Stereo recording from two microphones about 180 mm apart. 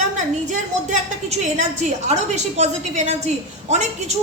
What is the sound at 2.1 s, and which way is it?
A woman's voice, 40° right (ahead or behind).